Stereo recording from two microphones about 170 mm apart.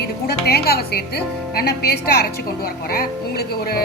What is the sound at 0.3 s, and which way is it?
A woman's voice, 70° left (ahead or behind).